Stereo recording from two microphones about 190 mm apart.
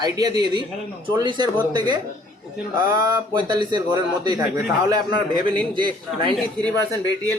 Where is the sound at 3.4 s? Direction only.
20° right (ahead or behind).